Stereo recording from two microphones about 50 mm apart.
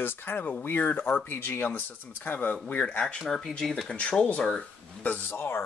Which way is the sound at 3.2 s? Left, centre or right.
Centre.